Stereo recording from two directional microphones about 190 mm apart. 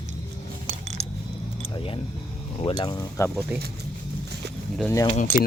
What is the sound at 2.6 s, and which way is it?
Speech, 30° left (ahead or behind).